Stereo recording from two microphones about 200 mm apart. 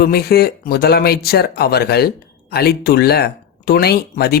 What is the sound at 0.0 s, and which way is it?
Speech, 50° left (ahead or behind).